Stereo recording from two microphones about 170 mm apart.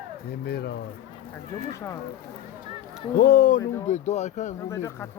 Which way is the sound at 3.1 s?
65° left (ahead or behind).